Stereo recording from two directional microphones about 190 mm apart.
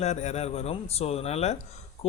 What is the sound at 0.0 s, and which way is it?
Speech, 35° left (ahead or behind).